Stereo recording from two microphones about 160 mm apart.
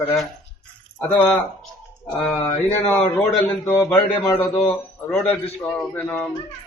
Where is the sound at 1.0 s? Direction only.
10° left (ahead or behind).